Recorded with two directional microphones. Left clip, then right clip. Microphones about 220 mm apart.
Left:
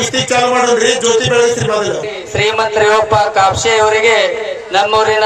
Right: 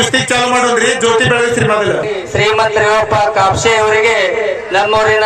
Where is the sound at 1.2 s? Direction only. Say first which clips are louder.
Even; centre (ahead or behind).